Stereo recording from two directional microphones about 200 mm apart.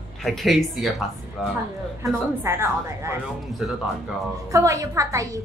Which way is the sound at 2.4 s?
15° right (ahead or behind).